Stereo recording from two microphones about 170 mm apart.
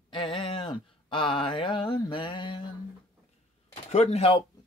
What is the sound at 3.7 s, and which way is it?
Speech, 40° left (ahead or behind).